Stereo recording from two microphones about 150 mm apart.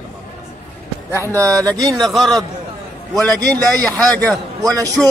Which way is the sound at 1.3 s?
20° right (ahead or behind).